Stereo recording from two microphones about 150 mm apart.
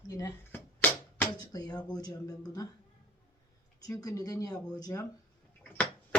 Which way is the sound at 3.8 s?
25° left (ahead or behind).